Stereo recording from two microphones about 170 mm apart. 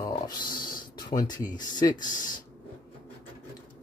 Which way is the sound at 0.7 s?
55° left (ahead or behind).